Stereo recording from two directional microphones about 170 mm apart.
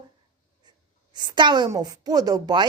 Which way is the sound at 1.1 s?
25° right (ahead or behind).